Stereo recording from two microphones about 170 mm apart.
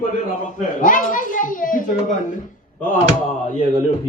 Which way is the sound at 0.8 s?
50° left (ahead or behind).